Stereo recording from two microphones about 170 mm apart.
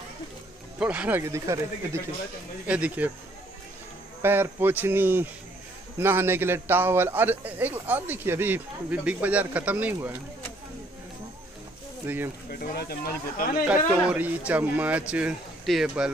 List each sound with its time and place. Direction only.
0.7 s a man's voice: 10° right (ahead or behind)
4.2 s a man's voice: 10° right (ahead or behind)
12.4 s speech: 65° left (ahead or behind)
13.7 s a man's voice: 10° right (ahead or behind)